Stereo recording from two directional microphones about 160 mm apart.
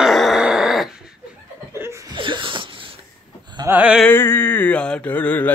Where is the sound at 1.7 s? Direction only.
15° right (ahead or behind).